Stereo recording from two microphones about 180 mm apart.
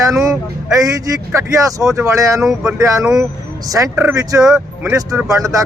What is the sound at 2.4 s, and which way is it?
Speech, 5° right (ahead or behind).